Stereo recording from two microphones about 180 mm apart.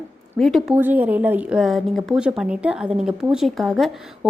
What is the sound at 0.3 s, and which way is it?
A woman's voice, centre (ahead or behind).